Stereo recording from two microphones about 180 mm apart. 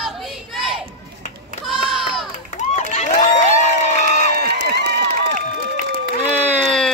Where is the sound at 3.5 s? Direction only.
40° left (ahead or behind).